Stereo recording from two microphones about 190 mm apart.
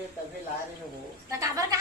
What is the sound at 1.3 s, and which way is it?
Speech, 15° right (ahead or behind).